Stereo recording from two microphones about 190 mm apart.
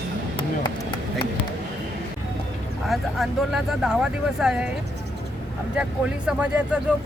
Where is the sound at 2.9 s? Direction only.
Centre (ahead or behind).